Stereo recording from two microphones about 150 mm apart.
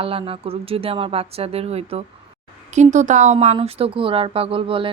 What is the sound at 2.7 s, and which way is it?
Speech, 55° right (ahead or behind).